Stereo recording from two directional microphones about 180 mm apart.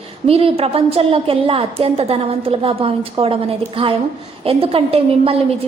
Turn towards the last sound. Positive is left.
turn(degrees=-30)  # may be behind; listen again after turning